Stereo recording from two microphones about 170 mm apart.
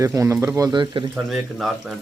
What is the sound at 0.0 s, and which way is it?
Speech, 15° right (ahead or behind).